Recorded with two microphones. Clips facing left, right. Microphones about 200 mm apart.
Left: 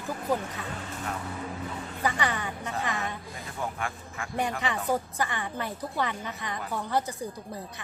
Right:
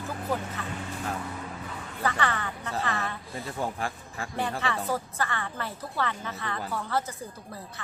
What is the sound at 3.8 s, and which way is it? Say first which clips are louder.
Speech: right 1 dB; 35° right (ahead or behind).